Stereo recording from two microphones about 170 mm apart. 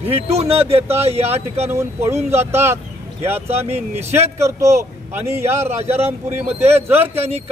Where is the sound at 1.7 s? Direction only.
15° right (ahead or behind).